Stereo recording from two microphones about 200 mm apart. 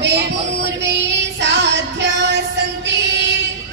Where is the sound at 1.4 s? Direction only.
60° right (ahead or behind).